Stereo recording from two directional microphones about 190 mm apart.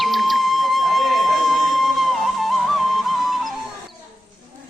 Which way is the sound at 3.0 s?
Centre (ahead or behind).